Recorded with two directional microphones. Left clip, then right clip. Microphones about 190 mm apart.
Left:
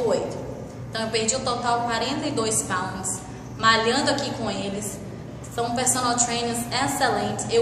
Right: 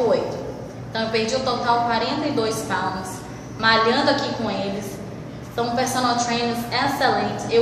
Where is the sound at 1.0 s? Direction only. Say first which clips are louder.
Right 3 dB; 20° left (ahead or behind).